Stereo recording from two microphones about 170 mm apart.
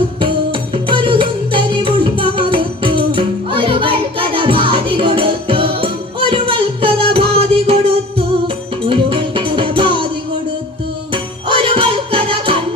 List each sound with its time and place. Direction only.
0.2 s music: 30° right (ahead or behind)
11.1 s music: 30° right (ahead or behind)